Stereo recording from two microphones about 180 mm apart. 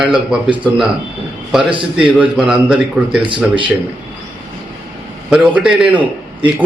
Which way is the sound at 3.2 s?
25° right (ahead or behind).